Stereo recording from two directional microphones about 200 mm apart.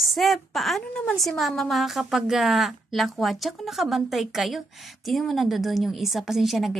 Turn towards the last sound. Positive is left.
turn(degrees=0)  # may be behind; listen again after turning